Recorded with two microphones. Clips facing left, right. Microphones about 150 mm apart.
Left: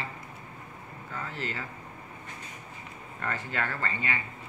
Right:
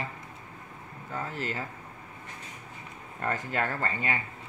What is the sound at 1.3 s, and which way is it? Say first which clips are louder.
Speech: right 1 dB; 45° right (ahead or behind).